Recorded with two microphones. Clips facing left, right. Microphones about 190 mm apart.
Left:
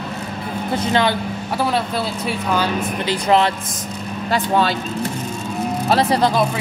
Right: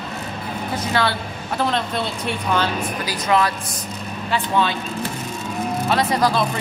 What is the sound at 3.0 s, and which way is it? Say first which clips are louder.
Speech: left 3 dB; 25° left (ahead or behind).